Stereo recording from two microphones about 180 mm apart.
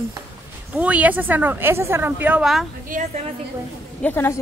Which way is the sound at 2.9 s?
45° right (ahead or behind).